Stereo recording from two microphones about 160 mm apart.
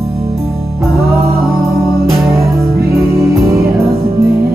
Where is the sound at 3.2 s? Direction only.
20° right (ahead or behind).